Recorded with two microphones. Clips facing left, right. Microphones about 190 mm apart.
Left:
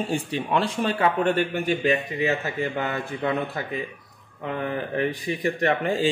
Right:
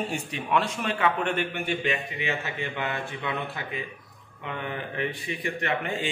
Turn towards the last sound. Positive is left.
turn(degrees=35)  # may be behind; listen again after turning